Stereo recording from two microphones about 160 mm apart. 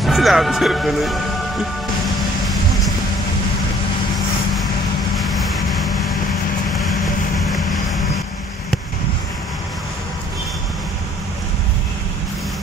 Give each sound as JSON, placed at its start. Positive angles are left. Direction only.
{"t": 0.0, "sound": "speech", "side_deg": 0}
{"t": 5.1, "sound": "vehicle", "side_deg": 0}